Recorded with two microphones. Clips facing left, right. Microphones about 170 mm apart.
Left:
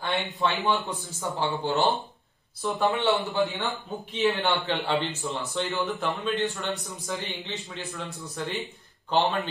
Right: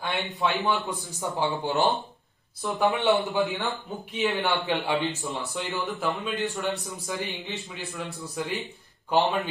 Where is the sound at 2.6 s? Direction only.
Centre (ahead or behind).